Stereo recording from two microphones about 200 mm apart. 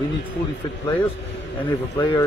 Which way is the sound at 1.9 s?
25° left (ahead or behind).